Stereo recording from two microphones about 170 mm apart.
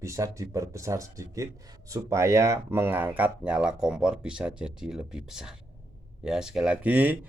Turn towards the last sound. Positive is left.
turn(degrees=-10)  # may be behind; listen again after turning